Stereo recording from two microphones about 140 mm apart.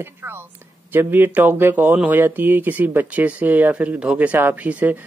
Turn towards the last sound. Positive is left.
turn(degrees=-10)  # may be behind; listen again after turning